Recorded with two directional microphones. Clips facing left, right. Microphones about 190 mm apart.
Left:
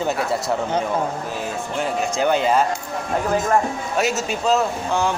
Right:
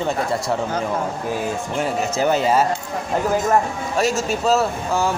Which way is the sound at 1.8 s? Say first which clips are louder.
Even; 5° right (ahead or behind).